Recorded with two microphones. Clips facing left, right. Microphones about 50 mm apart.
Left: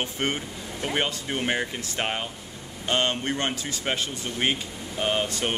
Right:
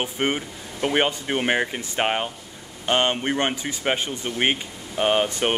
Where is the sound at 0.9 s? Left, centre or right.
Right.